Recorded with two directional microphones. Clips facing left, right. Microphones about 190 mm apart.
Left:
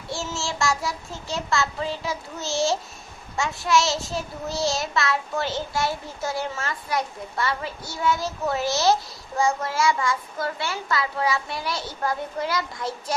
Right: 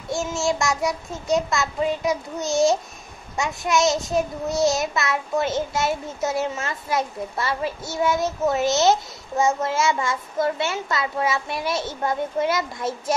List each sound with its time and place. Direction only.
0.4 s a child's voice: 20° right (ahead or behind)